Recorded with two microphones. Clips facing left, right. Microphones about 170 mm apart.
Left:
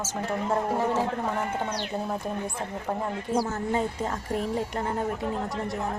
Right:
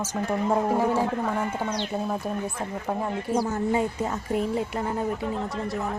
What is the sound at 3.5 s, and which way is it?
Speech, 10° right (ahead or behind).